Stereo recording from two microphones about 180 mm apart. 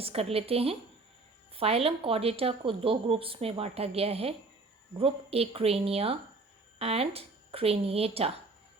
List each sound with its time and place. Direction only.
0.0 s speech: 35° right (ahead or behind)